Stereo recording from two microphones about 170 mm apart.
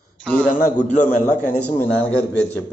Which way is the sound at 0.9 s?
45° left (ahead or behind).